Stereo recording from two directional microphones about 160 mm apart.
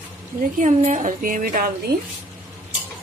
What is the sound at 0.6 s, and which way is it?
A woman's voice, 50° right (ahead or behind).